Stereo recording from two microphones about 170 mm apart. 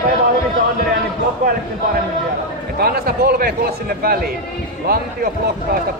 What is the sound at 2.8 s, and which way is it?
A man's voice, 65° right (ahead or behind).